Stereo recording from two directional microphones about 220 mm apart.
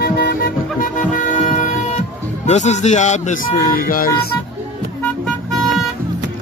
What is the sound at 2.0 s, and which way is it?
Speech, 30° left (ahead or behind).